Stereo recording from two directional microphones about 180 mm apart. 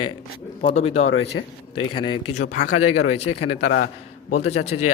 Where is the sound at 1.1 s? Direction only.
85° left.